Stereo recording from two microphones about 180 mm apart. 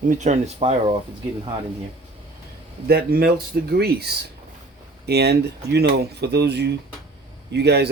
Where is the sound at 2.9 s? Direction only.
60° right (ahead or behind).